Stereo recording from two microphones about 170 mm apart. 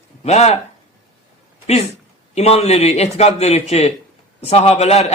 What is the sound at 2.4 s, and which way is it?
A man's voice, 40° left (ahead or behind).